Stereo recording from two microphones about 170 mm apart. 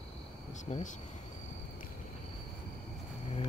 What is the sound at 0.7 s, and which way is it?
Speech, 35° left (ahead or behind).